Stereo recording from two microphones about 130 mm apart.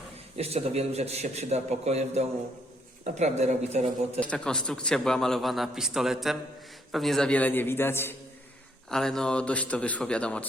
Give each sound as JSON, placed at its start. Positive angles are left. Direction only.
{"t": 0.3, "sound": "a man's voice", "side_deg": -55}
{"t": 4.2, "sound": "a man's voice", "side_deg": 10}
{"t": 8.9, "sound": "speech", "side_deg": 5}